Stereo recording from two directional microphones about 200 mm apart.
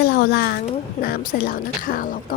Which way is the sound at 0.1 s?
55° left (ahead or behind).